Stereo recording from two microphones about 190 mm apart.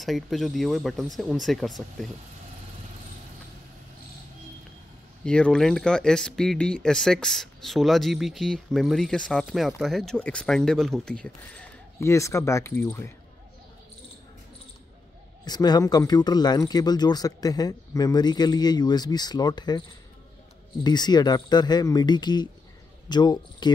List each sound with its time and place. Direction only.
0.0 s speech: centre (ahead or behind)
5.2 s speech: 5° left (ahead or behind)
15.4 s speech: 20° left (ahead or behind)
20.8 s speech: 20° left (ahead or behind)